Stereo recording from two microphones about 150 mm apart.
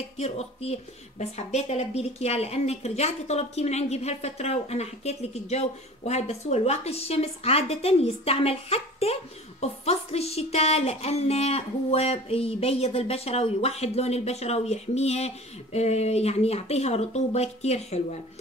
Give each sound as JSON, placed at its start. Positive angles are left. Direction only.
{"t": 0.2, "sound": "speech", "side_deg": 45}